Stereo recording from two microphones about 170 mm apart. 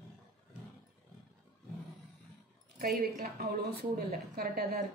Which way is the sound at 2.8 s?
60° right (ahead or behind).